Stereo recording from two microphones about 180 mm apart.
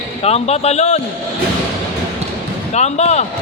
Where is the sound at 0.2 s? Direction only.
35° left (ahead or behind).